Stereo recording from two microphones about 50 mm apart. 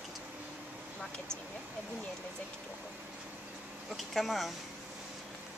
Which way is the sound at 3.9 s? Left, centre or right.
Centre.